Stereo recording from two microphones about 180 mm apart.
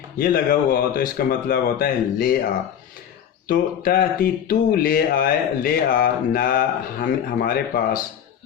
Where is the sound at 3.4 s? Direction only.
50° left (ahead or behind).